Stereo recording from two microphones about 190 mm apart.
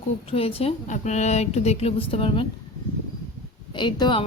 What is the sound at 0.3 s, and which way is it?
Speech, 30° left (ahead or behind).